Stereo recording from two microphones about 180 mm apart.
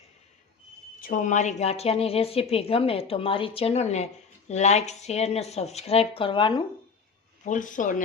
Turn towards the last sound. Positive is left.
turn(degrees=45)  # may be behind; listen again after turning